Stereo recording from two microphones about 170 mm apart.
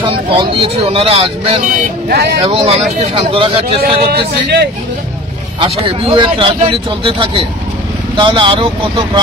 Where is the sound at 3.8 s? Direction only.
70° right (ahead or behind).